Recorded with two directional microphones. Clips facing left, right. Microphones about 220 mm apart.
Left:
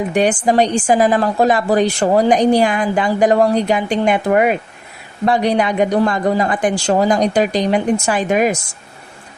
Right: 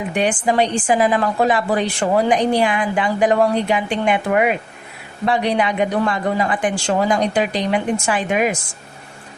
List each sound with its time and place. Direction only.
0.1 s a woman's voice: 40° left (ahead or behind)